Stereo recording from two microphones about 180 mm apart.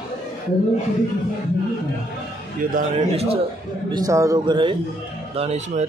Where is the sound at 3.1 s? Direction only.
35° right (ahead or behind).